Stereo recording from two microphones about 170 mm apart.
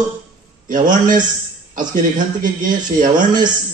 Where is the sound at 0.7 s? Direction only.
50° right (ahead or behind).